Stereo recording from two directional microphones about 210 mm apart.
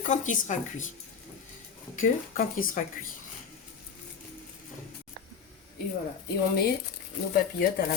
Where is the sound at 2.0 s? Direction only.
40° left (ahead or behind).